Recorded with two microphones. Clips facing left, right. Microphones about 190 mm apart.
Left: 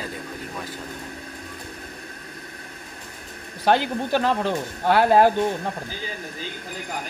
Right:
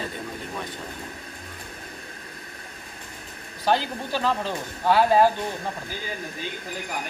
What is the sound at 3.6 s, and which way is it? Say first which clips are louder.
Speech: left 3 dB; 60° left (ahead or behind).